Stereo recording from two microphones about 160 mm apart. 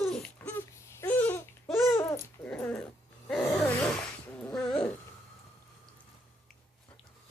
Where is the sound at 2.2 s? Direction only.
10° left (ahead or behind).